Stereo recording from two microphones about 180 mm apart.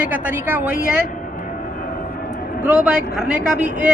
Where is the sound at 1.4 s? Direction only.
50° left (ahead or behind).